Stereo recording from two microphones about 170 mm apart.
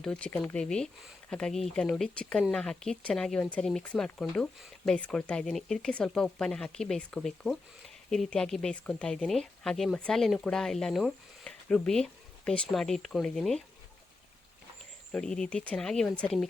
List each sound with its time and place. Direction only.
0.0 s speech: 5° left (ahead or behind)
15.1 s speech: 5° left (ahead or behind)